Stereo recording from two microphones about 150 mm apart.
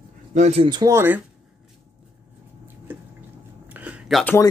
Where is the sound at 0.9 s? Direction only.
15° right (ahead or behind).